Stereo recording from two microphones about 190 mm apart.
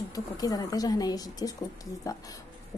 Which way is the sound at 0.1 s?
20° left (ahead or behind).